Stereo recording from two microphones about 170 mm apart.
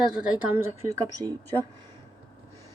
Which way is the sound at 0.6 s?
20° right (ahead or behind).